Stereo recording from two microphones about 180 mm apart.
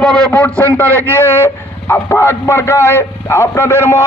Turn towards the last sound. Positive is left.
turn(degrees=15)  # may be behind; listen again after turning